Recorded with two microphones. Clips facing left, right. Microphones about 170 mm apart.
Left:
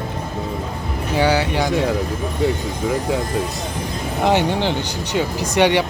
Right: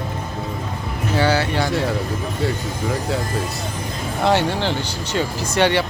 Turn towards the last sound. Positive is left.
turn(degrees=15)  # may be behind; listen again after turning